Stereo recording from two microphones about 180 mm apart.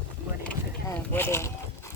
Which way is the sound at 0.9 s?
15° left (ahead or behind).